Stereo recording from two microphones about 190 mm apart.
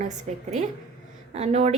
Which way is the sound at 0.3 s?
35° right (ahead or behind).